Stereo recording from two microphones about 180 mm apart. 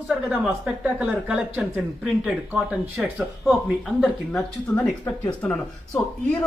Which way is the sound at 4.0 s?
5° left (ahead or behind).